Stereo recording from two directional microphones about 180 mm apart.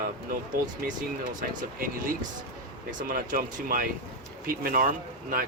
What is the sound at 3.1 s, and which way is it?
Speech, 50° right (ahead or behind).